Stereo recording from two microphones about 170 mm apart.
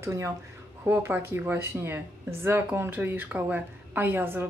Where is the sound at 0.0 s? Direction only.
15° right (ahead or behind).